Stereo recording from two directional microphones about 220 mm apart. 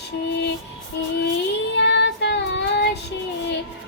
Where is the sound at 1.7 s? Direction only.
50° left (ahead or behind).